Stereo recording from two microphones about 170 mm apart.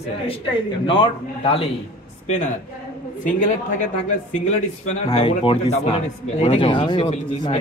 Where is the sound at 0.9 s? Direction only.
30° left (ahead or behind).